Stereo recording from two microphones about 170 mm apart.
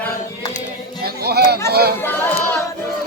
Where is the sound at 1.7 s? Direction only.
70° right (ahead or behind).